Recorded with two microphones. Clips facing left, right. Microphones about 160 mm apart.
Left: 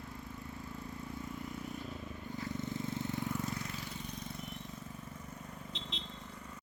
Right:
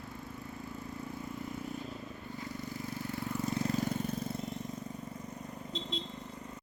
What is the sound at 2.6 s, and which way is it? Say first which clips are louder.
Vehicle: left 2 dB; 20° left (ahead or behind).